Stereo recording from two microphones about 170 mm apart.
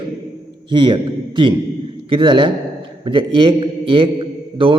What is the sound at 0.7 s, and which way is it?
A man's voice, 30° right (ahead or behind).